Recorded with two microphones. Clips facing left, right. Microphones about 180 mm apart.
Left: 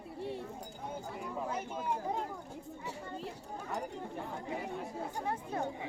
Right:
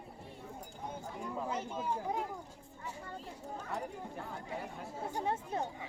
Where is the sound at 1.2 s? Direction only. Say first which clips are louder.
Right 1 dB; 10° left (ahead or behind).